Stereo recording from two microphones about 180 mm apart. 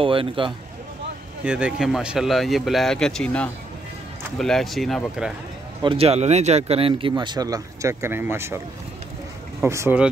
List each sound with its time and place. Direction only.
0.0 s speech: 30° right (ahead or behind)
1.4 s speech: 5° right (ahead or behind)
5.8 s speech: 30° right (ahead or behind); by 8.5 s 15° right (ahead or behind)
9.6 s speech: 15° right (ahead or behind)